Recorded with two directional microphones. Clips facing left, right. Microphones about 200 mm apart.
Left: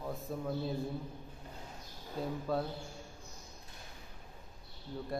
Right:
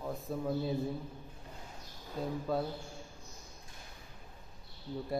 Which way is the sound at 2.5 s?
Centre (ahead or behind).